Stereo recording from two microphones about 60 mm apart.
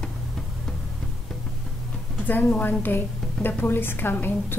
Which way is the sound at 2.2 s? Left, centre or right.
Left.